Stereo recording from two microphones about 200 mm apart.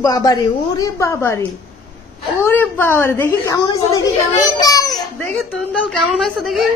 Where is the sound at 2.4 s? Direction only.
10° left (ahead or behind).